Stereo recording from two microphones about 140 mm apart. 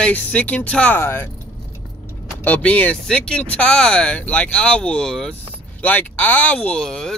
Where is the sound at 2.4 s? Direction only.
10° left (ahead or behind).